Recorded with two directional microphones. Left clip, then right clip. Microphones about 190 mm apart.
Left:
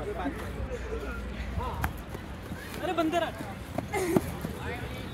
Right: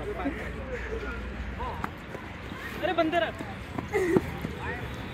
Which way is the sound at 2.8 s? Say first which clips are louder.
Right 2 dB; 80° left.